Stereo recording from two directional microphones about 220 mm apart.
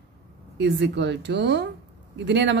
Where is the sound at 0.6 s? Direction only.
50° right (ahead or behind).